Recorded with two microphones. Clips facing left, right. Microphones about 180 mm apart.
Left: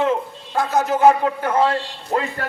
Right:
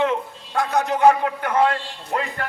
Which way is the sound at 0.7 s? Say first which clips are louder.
Left 2 dB; centre (ahead or behind).